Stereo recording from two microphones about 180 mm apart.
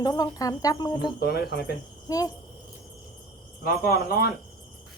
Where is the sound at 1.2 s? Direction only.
65° left (ahead or behind).